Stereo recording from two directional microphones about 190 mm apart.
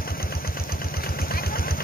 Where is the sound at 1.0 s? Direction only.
50° left (ahead or behind).